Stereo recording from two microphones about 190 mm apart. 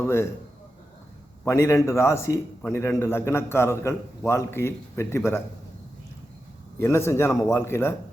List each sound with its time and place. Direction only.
0.0 s a man's voice: 15° left (ahead or behind)
1.5 s a man's voice: 15° left (ahead or behind)
6.7 s a man's voice: 15° left (ahead or behind)